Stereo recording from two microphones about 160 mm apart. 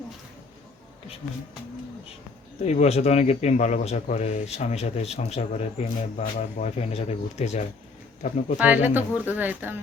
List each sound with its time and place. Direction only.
2.6 s speech: 45° left (ahead or behind)
8.5 s speech: 10° right (ahead or behind)